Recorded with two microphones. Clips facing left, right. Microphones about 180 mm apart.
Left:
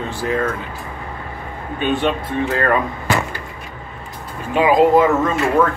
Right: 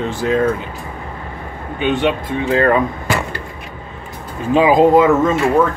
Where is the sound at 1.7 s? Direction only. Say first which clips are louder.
Right 2 dB; 15° right (ahead or behind).